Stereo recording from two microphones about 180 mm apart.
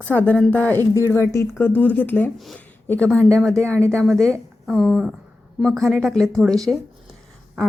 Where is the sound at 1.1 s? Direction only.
15° left (ahead or behind).